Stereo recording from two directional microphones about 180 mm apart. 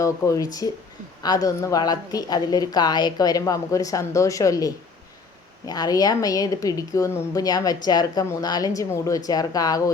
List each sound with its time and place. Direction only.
0.0 s a woman's voice: 20° left (ahead or behind)